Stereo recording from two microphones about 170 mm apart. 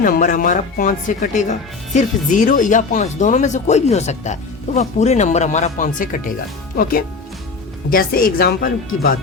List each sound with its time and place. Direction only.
0.0 s speech: 50° left (ahead or behind)